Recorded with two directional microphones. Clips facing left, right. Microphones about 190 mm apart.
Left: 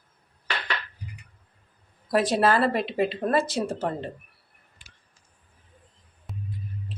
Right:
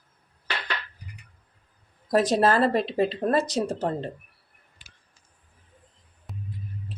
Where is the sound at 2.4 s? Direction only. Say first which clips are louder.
Left 1 dB; 40° right (ahead or behind).